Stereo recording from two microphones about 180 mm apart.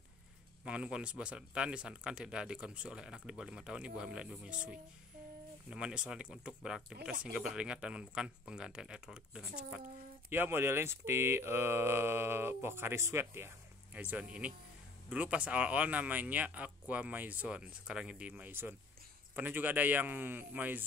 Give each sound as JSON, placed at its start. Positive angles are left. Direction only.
{"t": 0.7, "sound": "speech", "side_deg": -5}